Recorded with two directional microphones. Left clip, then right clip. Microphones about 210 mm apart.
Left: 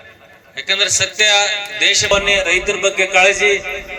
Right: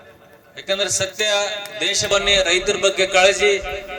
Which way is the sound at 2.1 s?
60° right (ahead or behind).